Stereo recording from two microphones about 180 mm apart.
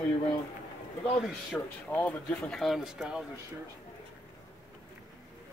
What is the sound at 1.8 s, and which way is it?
A man's voice, 10° left (ahead or behind).